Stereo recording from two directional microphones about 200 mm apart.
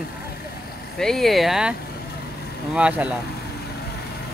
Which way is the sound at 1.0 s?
Centre (ahead or behind).